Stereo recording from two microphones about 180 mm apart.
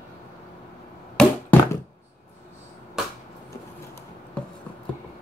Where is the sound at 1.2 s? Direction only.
5° left (ahead or behind).